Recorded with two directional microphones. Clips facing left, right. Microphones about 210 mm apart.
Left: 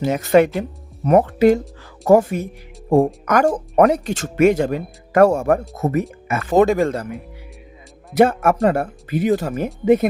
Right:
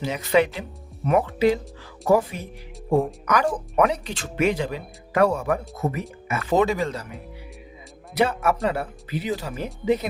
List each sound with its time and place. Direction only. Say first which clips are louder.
0.0 s speech: left 6 dB; 45° left (ahead or behind)
8.1 s speech: left 7 dB; 50° left (ahead or behind)